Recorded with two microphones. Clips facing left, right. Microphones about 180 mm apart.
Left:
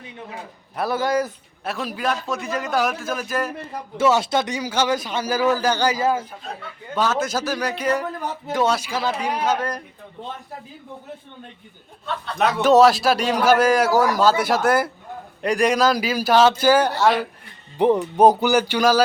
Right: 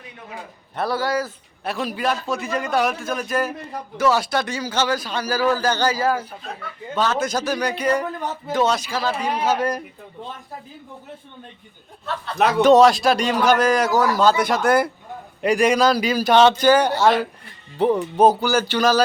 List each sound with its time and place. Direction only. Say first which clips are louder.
0.9 s a man's voice: left 3 dB; 20° left (ahead or behind)
1.6 s a man's voice: right 1 dB; centre (ahead or behind)
3.9 s a man's voice: left 1 dB; 25° left (ahead or behind)
6.9 s a man's voice: even; 5° left (ahead or behind)
9.4 s speech: right 4 dB; 10° right (ahead or behind)
12.0 s a man's voice: right 2 dB; centre (ahead or behind)
17.7 s speech: left 1 dB; 15° left (ahead or behind)